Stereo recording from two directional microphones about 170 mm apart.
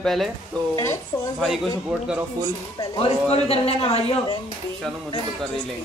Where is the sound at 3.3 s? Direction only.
35° left (ahead or behind).